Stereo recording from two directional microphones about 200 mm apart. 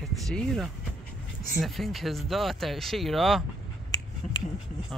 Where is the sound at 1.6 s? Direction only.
Centre (ahead or behind).